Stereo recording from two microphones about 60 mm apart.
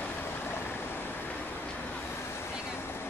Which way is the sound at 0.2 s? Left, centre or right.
Left.